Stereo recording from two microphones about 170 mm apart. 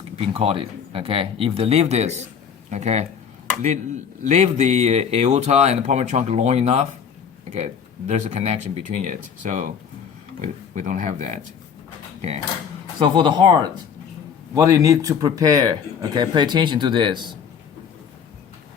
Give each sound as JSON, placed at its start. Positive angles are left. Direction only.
{"t": 0.2, "sound": "speech", "side_deg": -35}
{"t": 13.0, "sound": "speech", "side_deg": -25}